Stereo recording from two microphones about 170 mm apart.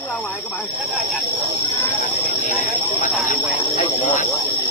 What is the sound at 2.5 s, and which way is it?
Speech, 45° left (ahead or behind).